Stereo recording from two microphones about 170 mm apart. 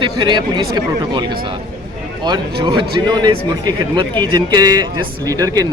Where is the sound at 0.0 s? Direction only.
25° right (ahead or behind).